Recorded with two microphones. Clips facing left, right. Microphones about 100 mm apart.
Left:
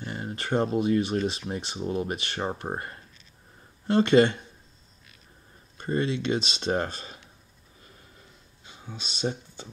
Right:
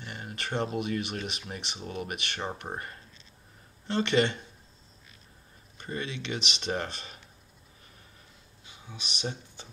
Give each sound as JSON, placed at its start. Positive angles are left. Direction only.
{"t": 0.0, "sound": "speech", "side_deg": 30}
{"t": 5.8, "sound": "speech", "side_deg": 35}
{"t": 8.6, "sound": "speech", "side_deg": 40}